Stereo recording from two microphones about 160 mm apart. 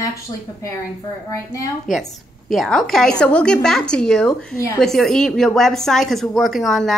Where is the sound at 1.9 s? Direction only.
Centre (ahead or behind).